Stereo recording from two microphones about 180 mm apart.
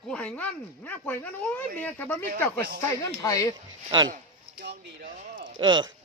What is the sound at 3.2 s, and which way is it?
Speech, 20° left (ahead or behind).